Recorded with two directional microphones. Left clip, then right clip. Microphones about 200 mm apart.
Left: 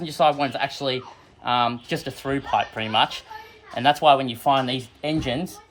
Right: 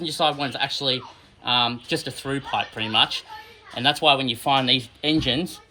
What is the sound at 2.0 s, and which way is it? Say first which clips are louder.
Speech: left 2 dB; 20° left (ahead or behind).